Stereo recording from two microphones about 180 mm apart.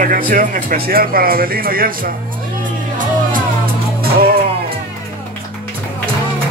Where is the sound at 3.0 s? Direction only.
50° right (ahead or behind).